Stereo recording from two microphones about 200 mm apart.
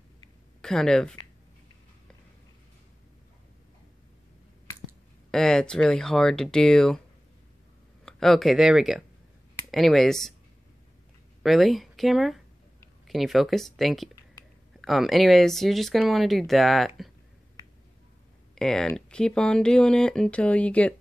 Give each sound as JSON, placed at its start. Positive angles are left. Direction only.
{"t": 0.6, "sound": "speech", "side_deg": 5}
{"t": 5.3, "sound": "speech", "side_deg": 5}
{"t": 8.0, "sound": "speech", "side_deg": 5}
{"t": 11.4, "sound": "speech", "side_deg": 0}
{"t": 18.5, "sound": "speech", "side_deg": 5}